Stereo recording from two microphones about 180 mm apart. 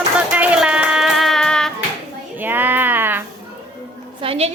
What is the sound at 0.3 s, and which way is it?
Music, 5° right (ahead or behind).